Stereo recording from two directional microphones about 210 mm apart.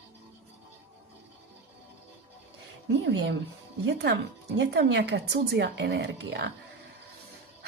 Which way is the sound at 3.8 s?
55° right (ahead or behind).